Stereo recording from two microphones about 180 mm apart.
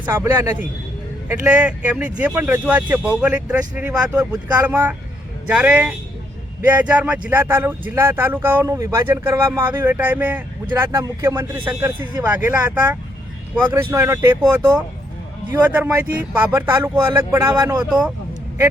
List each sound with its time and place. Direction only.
0.0 s speech: 10° right (ahead or behind)
4.2 s speech: 20° right (ahead or behind)